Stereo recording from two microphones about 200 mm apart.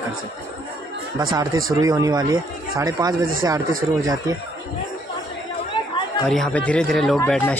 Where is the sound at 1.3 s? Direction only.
15° right (ahead or behind).